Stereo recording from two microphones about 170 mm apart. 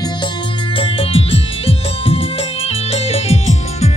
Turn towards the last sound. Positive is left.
turn(degrees=40)  # may be behind; listen again after turning